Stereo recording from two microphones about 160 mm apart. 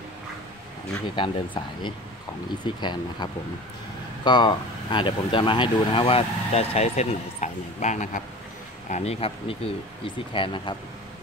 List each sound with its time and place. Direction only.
1.1 s speech: 30° left (ahead or behind)